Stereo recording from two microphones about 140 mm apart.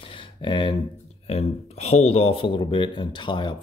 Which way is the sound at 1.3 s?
50° left (ahead or behind).